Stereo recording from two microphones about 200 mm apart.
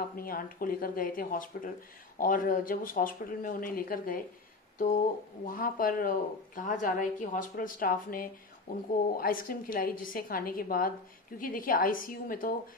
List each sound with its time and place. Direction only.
0.2 s a woman's voice: 45° left (ahead or behind)
4.7 s a sound: 40° left (ahead or behind)
5.5 s a woman's voice: 45° left (ahead or behind)